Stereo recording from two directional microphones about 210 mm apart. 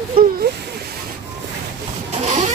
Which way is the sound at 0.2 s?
40° right (ahead or behind).